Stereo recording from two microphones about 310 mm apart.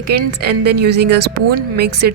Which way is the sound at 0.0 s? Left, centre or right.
Right.